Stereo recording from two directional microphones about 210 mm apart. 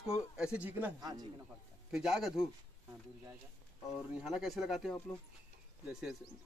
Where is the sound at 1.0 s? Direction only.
20° right (ahead or behind).